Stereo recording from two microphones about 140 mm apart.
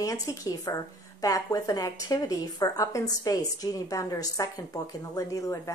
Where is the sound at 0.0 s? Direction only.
25° left (ahead or behind).